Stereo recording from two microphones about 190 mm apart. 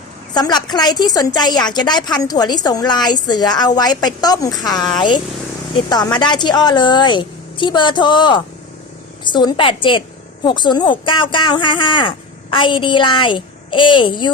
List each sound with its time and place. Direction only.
0.3 s a woman's voice: 20° left (ahead or behind)